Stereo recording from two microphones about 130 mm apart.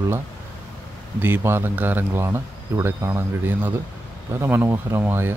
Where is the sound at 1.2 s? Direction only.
15° right (ahead or behind).